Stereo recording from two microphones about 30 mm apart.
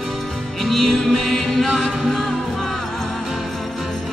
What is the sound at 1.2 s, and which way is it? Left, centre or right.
Chant, centre.